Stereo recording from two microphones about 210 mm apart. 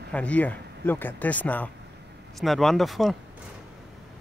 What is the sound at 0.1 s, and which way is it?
Speech, 5° left (ahead or behind).